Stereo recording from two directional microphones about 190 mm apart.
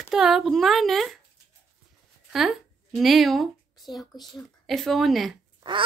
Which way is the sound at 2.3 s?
Centre (ahead or behind).